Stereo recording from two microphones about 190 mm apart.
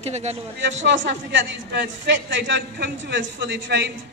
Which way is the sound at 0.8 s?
70° right (ahead or behind).